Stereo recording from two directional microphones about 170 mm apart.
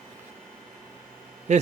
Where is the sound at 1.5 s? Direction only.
45° right (ahead or behind).